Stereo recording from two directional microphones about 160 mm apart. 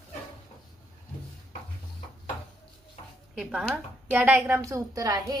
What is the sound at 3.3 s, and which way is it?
A woman's voice, centre (ahead or behind).